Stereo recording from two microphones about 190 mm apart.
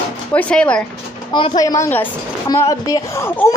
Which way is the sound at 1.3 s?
25° left (ahead or behind).